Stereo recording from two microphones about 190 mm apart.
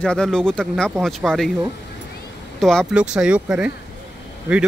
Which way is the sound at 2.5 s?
Centre (ahead or behind).